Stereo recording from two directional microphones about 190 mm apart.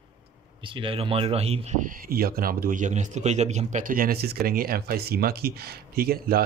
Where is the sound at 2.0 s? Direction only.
50° right (ahead or behind).